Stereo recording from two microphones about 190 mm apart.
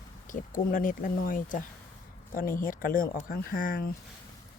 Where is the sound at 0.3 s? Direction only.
45° left (ahead or behind).